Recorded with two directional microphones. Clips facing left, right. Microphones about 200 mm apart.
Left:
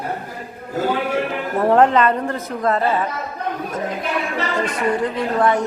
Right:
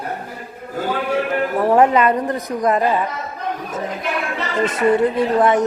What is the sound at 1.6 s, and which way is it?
A woman's voice, 10° right (ahead or behind).